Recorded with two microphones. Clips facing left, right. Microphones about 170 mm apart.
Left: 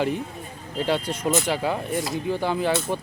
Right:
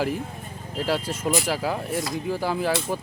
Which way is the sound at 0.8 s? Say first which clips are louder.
Left 1 dB; centre (ahead or behind).